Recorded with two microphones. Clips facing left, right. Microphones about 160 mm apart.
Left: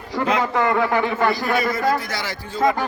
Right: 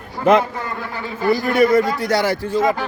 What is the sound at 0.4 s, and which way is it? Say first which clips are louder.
A man's voice: left 9 dB; 80° left.